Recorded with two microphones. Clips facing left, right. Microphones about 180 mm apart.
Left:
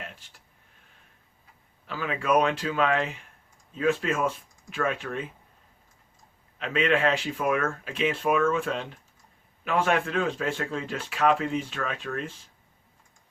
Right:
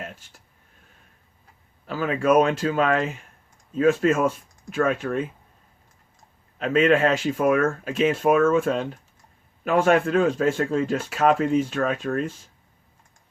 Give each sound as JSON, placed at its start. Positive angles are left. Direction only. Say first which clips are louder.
{"t": 0.0, "sound": "a sound", "louder": "right 5 dB", "side_deg": -45}
{"t": 1.9, "sound": "speech", "louder": "right 5 dB", "side_deg": -45}
{"t": 6.6, "sound": "speech", "louder": "right 6 dB", "side_deg": -45}